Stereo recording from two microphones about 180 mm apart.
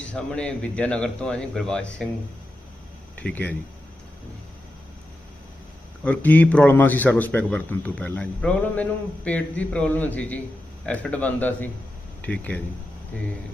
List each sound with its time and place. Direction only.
0.1 s a man's voice: 5° left (ahead or behind)
3.2 s speech: 10° left (ahead or behind)
6.1 s a man's voice: 10° left (ahead or behind)